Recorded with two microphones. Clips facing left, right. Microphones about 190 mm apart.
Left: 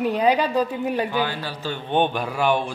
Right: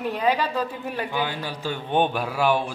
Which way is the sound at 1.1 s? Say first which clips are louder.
Left 2 dB; 15° right (ahead or behind).